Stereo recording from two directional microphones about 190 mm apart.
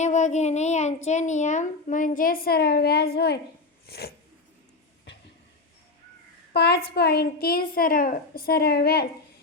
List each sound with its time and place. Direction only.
0.0 s child singing: 40° left (ahead or behind)
1.0 s a woman's voice: 40° left (ahead or behind); by 4.1 s 55° left (ahead or behind)
6.5 s a woman's voice: 60° left (ahead or behind)